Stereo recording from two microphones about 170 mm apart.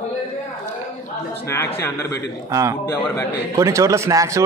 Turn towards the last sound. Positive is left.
turn(degrees=-20)  # may be behind; listen again after turning